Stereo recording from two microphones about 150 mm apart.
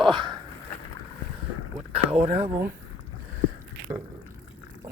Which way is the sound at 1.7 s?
45° right (ahead or behind).